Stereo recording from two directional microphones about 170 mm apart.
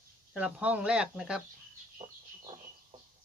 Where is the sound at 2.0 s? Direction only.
40° right (ahead or behind).